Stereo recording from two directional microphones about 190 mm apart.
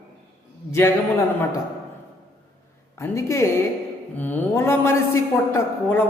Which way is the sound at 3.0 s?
15° left (ahead or behind).